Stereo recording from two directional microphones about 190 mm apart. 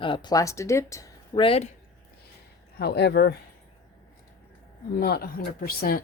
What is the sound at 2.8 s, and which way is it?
Speech, 60° left (ahead or behind).